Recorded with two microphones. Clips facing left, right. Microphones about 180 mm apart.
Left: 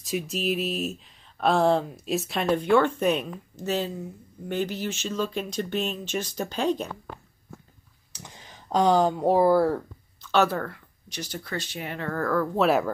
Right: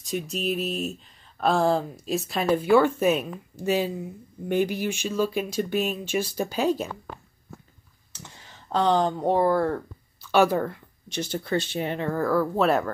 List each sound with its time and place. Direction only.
0.0 s speech: centre (ahead or behind)
8.1 s speech: 15° left (ahead or behind)
10.2 s speech: 10° right (ahead or behind); by 12.1 s 25° right (ahead or behind)
12.1 s speech: 10° right (ahead or behind)
12.6 s speech: 5° left (ahead or behind)